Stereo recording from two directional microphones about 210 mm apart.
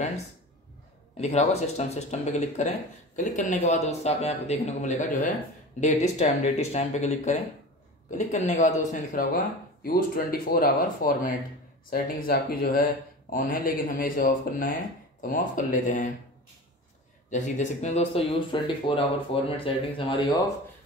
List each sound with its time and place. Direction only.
1.1 s a man's voice: 30° left (ahead or behind)
17.3 s a man's voice: 35° left (ahead or behind)